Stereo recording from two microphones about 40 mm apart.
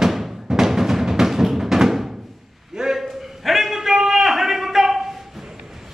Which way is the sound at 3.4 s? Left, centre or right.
Centre.